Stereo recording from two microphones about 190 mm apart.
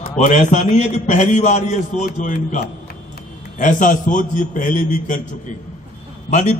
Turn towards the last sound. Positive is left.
turn(degrees=40)  # may be behind; listen again after turning